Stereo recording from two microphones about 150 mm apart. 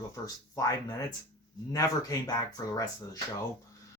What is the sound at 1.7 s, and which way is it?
Speech, 25° left (ahead or behind).